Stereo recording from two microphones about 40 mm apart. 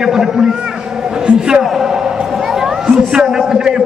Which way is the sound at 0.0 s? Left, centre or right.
Centre.